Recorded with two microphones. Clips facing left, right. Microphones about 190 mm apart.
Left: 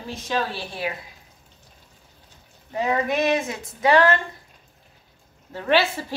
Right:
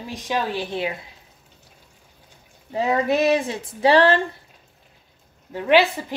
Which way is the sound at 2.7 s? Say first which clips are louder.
Right 3 dB; 30° right (ahead or behind).